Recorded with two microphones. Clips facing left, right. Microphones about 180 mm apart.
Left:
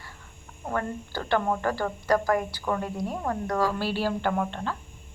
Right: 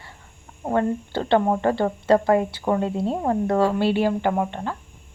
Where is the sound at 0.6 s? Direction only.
25° right (ahead or behind).